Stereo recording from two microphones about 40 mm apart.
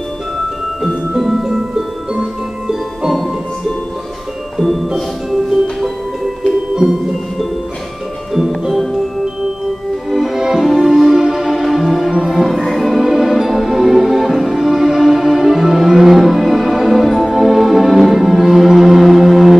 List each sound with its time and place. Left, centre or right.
1.3 s music: centre
4.6 s music: centre
10.1 s music: centre
12.7 s music: centre